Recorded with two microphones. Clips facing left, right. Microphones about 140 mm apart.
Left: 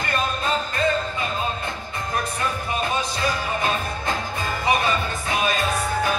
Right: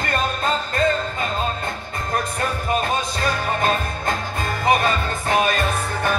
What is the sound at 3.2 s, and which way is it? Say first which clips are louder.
Music: right 2 dB; 45° right (ahead or behind).